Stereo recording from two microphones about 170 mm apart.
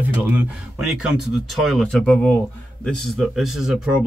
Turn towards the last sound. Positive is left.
turn(degrees=-5)  # may be behind; listen again after turning